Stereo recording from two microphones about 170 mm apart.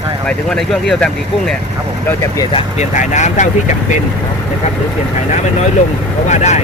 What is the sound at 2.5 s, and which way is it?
Speech, 45° left (ahead or behind).